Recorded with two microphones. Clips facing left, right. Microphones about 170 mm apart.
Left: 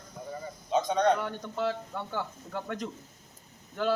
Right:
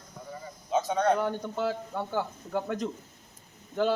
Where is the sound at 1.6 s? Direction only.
25° right (ahead or behind).